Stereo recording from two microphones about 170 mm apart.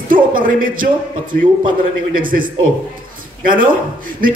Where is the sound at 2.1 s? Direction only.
55° right (ahead or behind).